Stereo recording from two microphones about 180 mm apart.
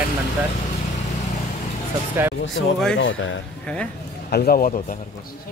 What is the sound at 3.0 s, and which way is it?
Speech, 90° left.